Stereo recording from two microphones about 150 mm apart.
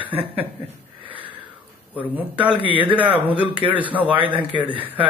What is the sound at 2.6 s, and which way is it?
Speech, 35° left (ahead or behind).